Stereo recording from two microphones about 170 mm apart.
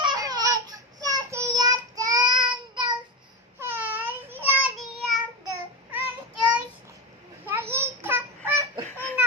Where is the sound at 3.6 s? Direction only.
10° right (ahead or behind).